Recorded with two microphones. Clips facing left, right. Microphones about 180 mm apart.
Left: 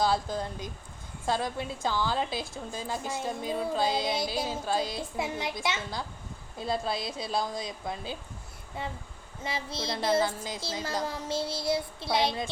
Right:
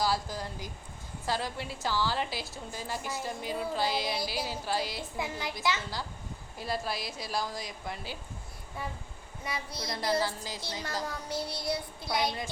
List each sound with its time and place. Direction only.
0.0 s a woman's voice: 25° left (ahead or behind)